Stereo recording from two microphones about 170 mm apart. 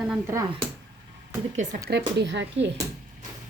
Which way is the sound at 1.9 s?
85° right.